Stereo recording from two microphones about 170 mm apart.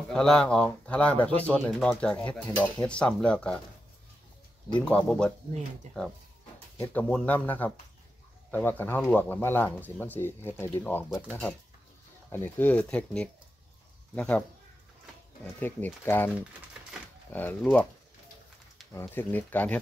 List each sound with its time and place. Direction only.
0.1 s speech: 5° left (ahead or behind)
4.8 s speech: 5° left (ahead or behind)
5.9 s speech: 45° right (ahead or behind)
6.8 s speech: 10° left (ahead or behind)
15.4 s speech: 10° left (ahead or behind)
17.3 s speech: 10° left (ahead or behind)
18.9 s speech: 10° left (ahead or behind)